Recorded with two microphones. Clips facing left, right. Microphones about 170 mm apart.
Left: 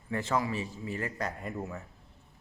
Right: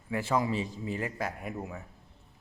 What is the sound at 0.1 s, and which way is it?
Speech, 10° right (ahead or behind).